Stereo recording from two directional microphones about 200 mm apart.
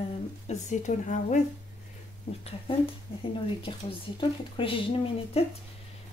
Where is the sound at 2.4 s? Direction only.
30° left (ahead or behind).